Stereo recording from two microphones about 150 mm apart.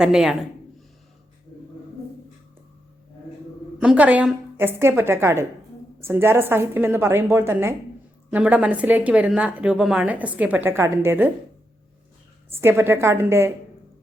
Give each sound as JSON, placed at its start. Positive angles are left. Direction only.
{"t": 0.0, "sound": "a man's voice", "side_deg": -5}
{"t": 3.8, "sound": "a woman's voice", "side_deg": -10}
{"t": 12.5, "sound": "a woman's voice", "side_deg": -15}